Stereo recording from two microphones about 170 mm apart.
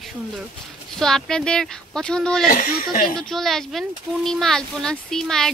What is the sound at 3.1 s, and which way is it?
Speech, centre (ahead or behind).